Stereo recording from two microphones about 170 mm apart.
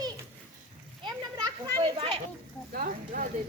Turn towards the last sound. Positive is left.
turn(degrees=-50)  # may be behind; listen again after turning